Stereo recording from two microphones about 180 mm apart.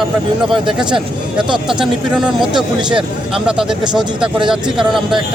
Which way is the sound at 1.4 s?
25° right (ahead or behind).